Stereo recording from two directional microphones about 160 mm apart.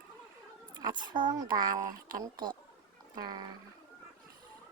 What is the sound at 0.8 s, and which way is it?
Speech, 30° right (ahead or behind).